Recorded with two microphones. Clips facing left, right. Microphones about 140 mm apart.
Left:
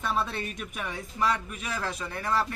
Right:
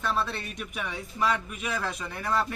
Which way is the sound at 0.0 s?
5° left (ahead or behind).